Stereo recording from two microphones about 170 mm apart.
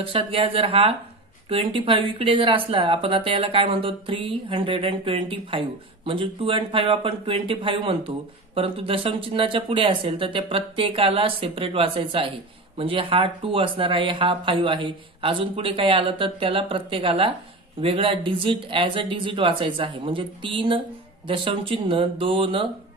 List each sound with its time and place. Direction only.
0.0 s speech: 30° right (ahead or behind)